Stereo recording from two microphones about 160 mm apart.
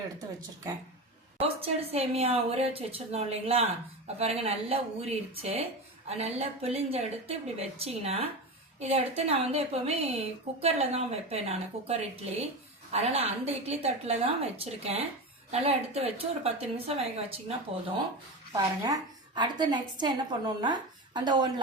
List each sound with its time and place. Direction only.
1.4 s a woman's voice: 40° right (ahead or behind)
18.5 s a woman's voice: 20° right (ahead or behind)